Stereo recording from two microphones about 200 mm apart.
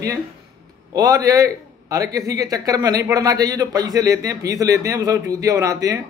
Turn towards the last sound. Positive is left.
turn(degrees=-15)  # may be behind; listen again after turning